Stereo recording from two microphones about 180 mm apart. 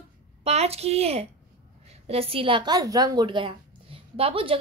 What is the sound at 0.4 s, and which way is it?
A woman's voice, 35° right (ahead or behind).